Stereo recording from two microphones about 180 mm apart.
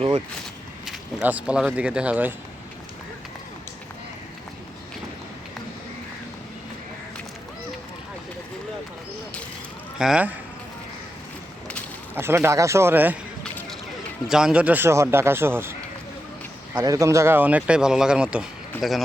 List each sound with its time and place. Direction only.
0.9 s speech: 10° right (ahead or behind)
10.0 s speech: 5° right (ahead or behind)
12.1 s a man's voice: 15° right (ahead or behind)
13.4 s a sound: 5° left (ahead or behind)
14.3 s a man's voice: 5° right (ahead or behind)
16.7 s a man's voice: 20° right (ahead or behind); by 19.0 s centre (ahead or behind)